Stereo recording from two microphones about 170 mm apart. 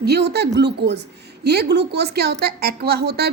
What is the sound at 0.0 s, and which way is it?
A woman's voice, 75° right (ahead or behind).